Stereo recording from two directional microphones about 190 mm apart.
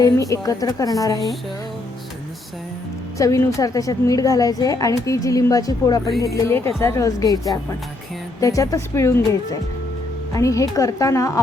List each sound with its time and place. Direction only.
0.0 s a woman's voice: 20° left (ahead or behind)
3.2 s a woman's voice: 15° left (ahead or behind)